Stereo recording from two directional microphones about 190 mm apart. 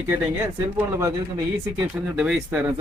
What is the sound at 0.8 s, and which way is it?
Speech, 15° right (ahead or behind).